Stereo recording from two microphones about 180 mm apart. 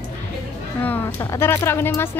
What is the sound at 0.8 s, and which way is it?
Speech, 10° left (ahead or behind).